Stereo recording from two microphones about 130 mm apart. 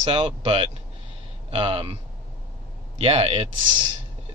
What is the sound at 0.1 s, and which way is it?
A man's voice, 45° right (ahead or behind).